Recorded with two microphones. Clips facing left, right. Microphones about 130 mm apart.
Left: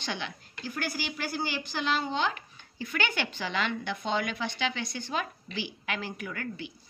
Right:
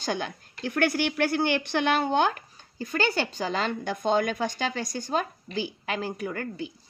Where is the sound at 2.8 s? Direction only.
35° right (ahead or behind).